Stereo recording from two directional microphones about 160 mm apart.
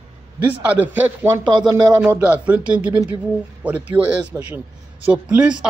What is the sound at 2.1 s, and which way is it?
Speech, 10° right (ahead or behind).